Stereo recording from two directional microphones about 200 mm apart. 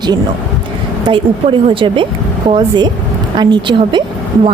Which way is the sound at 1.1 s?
25° right (ahead or behind).